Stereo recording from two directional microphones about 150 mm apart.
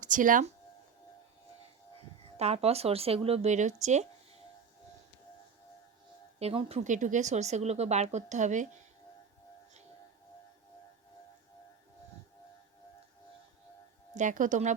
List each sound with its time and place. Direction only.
0.0 s speech: 60° right (ahead or behind)
2.4 s speech: 45° right (ahead or behind)
6.4 s speech: 40° right (ahead or behind)
6.8 s speech: 55° right (ahead or behind)
14.2 s a woman's voice: 60° right (ahead or behind)